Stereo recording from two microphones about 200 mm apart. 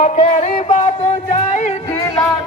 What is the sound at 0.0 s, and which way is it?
Music, 35° left (ahead or behind).